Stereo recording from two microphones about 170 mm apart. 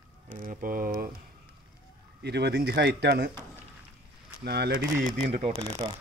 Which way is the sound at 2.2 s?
75° right (ahead or behind).